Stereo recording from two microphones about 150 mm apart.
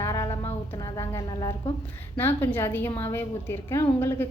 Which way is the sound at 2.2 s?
15° left (ahead or behind).